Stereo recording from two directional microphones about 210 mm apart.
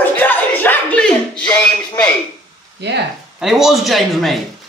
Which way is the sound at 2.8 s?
55° right (ahead or behind).